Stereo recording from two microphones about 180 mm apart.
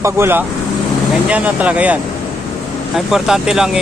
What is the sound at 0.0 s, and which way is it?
Speech, 15° right (ahead or behind).